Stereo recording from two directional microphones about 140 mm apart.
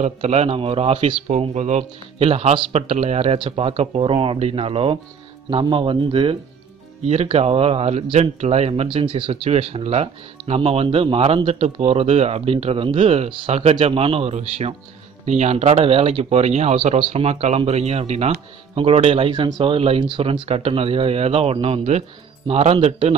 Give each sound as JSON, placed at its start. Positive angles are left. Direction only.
{"t": 0.0, "sound": "a man's voice", "side_deg": -50}
{"t": 1.3, "sound": "a man's voice", "side_deg": -55}